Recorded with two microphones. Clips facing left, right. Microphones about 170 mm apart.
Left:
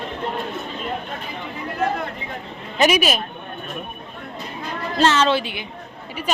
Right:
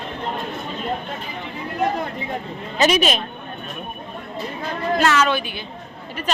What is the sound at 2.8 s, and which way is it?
Speech, 10° left (ahead or behind).